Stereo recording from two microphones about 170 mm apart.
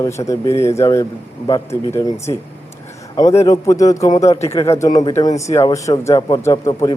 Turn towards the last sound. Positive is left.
turn(degrees=20)  # may be behind; listen again after turning